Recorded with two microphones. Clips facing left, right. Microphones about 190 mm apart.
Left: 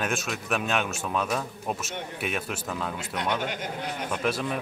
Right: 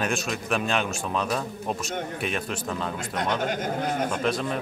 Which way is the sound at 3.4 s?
45° right (ahead or behind).